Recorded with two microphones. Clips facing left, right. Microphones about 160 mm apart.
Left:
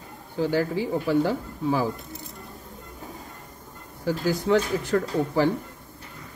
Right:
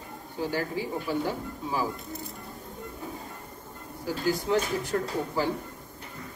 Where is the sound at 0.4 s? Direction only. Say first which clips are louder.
Left 6 dB; 80° left.